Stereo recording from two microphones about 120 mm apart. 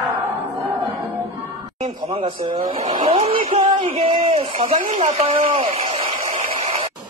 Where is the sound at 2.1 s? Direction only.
45° right (ahead or behind).